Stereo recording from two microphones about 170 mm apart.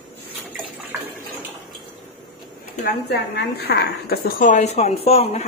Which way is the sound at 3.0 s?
70° left (ahead or behind).